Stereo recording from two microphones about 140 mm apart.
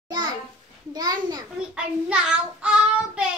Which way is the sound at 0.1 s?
30° right (ahead or behind).